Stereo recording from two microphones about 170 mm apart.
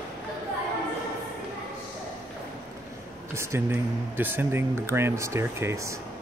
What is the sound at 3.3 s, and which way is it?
Speech, 15° right (ahead or behind).